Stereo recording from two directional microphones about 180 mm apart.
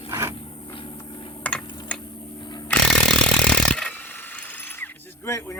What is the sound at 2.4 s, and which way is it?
Chainsaw, 25° left (ahead or behind).